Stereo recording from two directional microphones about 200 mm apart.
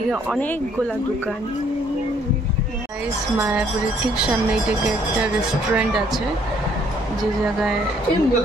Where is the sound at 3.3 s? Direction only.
10° right (ahead or behind).